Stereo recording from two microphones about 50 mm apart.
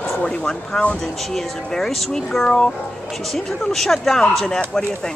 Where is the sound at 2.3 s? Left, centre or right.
Centre.